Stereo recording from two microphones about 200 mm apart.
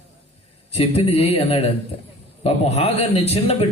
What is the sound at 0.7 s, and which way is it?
A man's voice, 30° left (ahead or behind).